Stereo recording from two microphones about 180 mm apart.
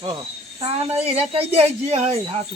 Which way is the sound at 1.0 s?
35° right (ahead or behind).